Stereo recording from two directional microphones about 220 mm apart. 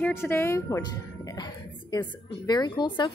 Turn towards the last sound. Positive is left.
turn(degrees=20)  # may be behind; listen again after turning